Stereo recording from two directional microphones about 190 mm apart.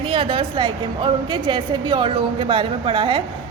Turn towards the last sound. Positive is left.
turn(degrees=-25)  # may be behind; listen again after turning